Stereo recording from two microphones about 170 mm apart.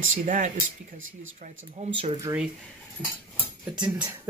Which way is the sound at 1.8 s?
40° right (ahead or behind).